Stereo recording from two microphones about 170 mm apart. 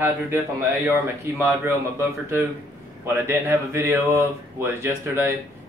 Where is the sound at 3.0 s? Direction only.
15° right (ahead or behind).